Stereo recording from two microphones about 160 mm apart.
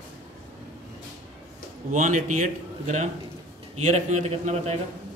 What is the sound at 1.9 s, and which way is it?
A man's voice, 50° right (ahead or behind).